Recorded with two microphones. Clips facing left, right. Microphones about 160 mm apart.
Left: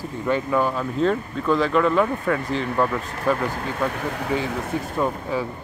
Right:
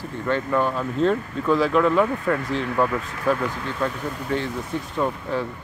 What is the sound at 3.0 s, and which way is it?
Speech, 40° left (ahead or behind).